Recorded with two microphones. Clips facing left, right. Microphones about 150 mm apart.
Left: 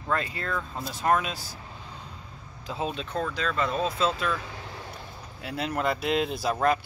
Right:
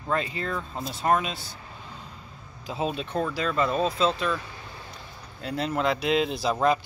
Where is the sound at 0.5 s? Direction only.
20° right (ahead or behind).